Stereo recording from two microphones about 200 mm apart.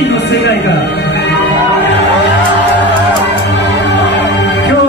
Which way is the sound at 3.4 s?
60° left (ahead or behind).